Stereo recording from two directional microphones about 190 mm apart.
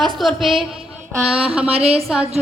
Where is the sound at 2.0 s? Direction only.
Centre (ahead or behind).